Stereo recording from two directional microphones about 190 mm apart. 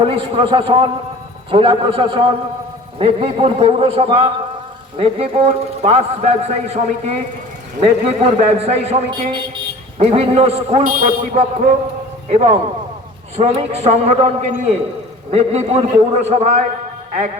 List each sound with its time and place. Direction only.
0.0 s a man's voice: 25° right (ahead or behind)
17.1 s music: 40° right (ahead or behind)